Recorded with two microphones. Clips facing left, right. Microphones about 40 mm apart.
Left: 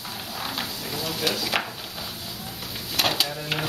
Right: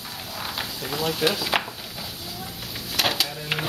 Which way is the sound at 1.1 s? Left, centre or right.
Centre.